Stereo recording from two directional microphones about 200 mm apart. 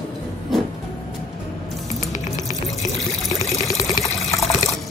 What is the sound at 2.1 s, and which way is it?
Music, 15° left (ahead or behind).